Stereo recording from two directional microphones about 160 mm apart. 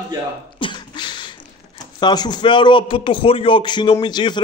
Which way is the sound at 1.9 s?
25° left (ahead or behind).